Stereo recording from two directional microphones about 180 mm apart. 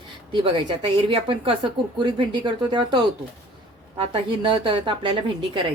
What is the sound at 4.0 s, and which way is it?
A woman's voice, 30° right (ahead or behind).